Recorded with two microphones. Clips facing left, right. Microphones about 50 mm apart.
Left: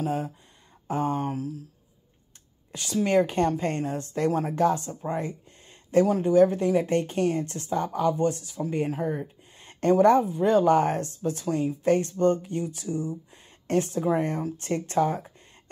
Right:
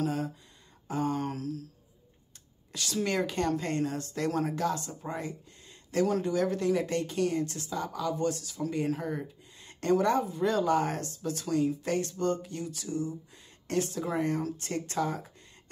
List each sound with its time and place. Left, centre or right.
0.0 s speech: left
1.1 s speech: centre
2.7 s speech: centre
3.1 s speech: left
5.1 s a sound: left
6.2 s speech: left